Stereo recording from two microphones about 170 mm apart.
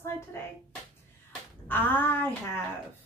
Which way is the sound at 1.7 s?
10° left (ahead or behind).